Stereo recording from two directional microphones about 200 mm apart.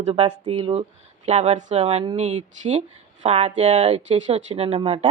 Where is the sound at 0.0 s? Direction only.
30° right (ahead or behind).